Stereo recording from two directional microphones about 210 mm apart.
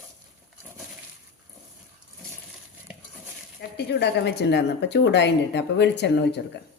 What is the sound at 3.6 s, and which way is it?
A woman's voice, 50° left (ahead or behind).